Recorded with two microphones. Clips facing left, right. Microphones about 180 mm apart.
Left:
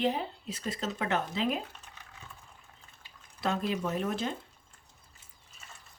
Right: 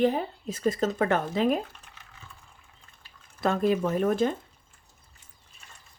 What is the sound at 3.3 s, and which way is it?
Speech, 50° right (ahead or behind).